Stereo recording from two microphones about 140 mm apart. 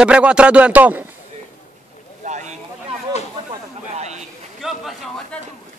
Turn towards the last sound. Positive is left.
turn(degrees=0)  # may be behind; listen again after turning